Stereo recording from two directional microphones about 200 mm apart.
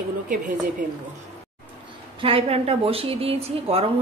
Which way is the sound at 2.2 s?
30° right (ahead or behind).